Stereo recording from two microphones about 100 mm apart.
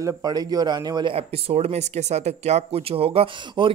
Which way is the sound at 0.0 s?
40° right (ahead or behind).